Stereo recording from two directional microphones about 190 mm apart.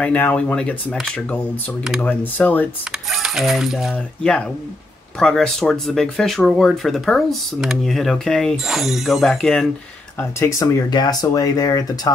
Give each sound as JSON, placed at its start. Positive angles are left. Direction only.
{"t": 0.0, "sound": "speech", "side_deg": 10}
{"t": 3.1, "sound": "speech", "side_deg": 0}
{"t": 10.1, "sound": "speech", "side_deg": 15}